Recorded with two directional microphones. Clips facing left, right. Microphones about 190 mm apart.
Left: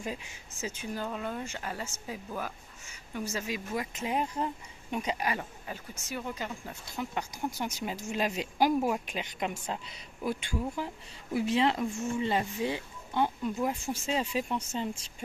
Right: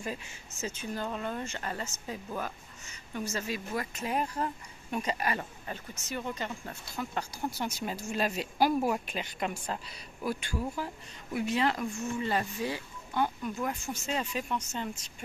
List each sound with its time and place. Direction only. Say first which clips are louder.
0.0 s speech: even; 15° left (ahead or behind)
11.3 s speech: left 2 dB; 30° left (ahead or behind)